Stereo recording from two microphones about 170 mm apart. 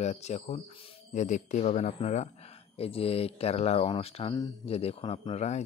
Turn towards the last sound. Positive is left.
turn(degrees=40)  # may be behind; listen again after turning